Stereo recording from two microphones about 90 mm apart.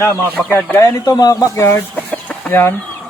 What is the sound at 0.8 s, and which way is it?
Speech, 45° left (ahead or behind).